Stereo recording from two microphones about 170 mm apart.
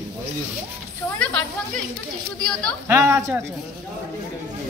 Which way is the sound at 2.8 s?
15° right (ahead or behind).